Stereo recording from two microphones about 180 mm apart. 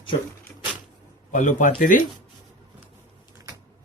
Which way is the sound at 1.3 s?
45° left (ahead or behind).